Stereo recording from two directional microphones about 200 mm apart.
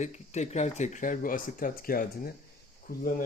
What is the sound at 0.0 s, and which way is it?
Speech, 35° left (ahead or behind).